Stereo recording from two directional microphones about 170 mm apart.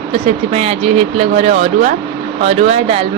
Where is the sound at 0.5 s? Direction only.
35° right (ahead or behind).